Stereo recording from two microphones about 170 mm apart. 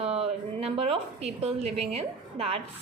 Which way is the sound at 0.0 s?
35° right (ahead or behind).